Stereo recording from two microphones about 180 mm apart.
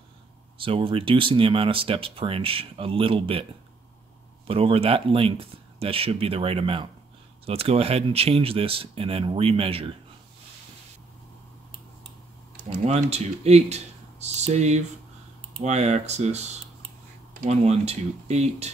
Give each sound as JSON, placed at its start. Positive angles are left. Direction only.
{"t": 0.6, "sound": "speech", "side_deg": -30}
{"t": 4.5, "sound": "speech", "side_deg": -30}
{"t": 12.6, "sound": "speech", "side_deg": -40}